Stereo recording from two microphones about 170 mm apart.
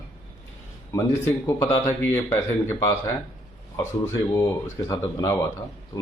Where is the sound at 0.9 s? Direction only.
15° left (ahead or behind).